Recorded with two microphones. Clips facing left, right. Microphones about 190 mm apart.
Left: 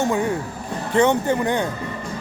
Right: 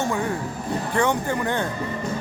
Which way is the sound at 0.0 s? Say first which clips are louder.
Left 3 dB; 20° left (ahead or behind).